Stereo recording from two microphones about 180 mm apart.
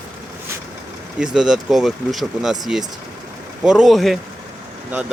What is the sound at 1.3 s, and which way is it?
Speech, 5° right (ahead or behind).